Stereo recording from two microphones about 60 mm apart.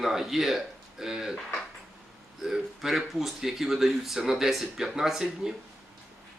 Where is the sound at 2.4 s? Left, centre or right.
Centre.